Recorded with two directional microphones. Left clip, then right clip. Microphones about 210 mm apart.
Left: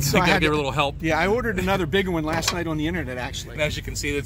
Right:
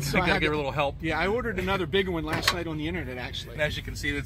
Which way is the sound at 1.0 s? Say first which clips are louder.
Left 5 dB; 45° left (ahead or behind).